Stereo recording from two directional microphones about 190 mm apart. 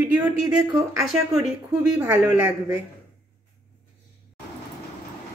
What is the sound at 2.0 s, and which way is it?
Speech, 10° right (ahead or behind).